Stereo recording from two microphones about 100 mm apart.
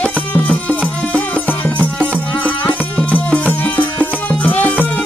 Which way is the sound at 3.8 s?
15° left (ahead or behind).